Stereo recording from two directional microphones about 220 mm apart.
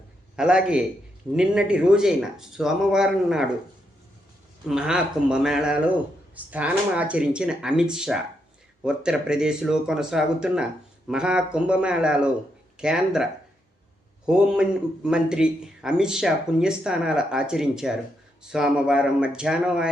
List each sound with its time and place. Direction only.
0.3 s a man's voice: 5° right (ahead or behind)
4.6 s a man's voice: 5° right (ahead or behind)
14.3 s a man's voice: 5° right (ahead or behind)